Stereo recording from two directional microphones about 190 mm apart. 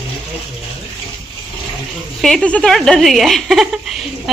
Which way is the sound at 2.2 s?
5° left (ahead or behind).